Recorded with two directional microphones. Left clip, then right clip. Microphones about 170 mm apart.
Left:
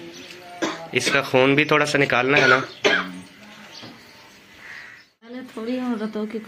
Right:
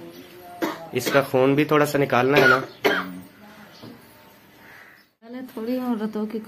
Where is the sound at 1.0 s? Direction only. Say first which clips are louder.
Left 1 dB; 10° left (ahead or behind).